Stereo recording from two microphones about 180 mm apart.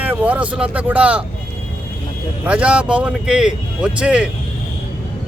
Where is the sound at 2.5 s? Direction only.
5° right (ahead or behind).